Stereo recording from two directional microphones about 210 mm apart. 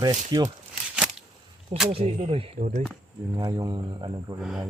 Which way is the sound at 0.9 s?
5° right (ahead or behind).